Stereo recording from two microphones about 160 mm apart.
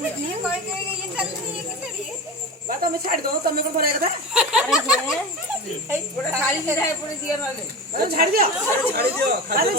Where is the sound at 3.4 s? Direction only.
70° right (ahead or behind).